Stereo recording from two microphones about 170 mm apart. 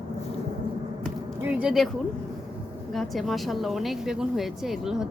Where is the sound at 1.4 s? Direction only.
5° right (ahead or behind).